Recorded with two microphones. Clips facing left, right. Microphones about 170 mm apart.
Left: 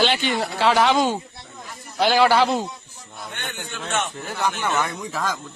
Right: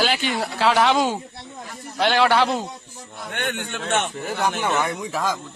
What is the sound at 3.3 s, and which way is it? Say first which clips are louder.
Speech: right 7 dB; 60° right (ahead or behind).